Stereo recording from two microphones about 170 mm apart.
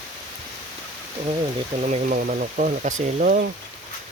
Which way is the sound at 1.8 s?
50° right (ahead or behind).